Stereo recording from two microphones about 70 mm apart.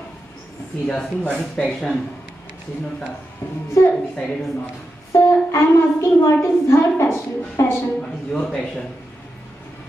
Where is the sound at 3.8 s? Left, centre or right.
Left.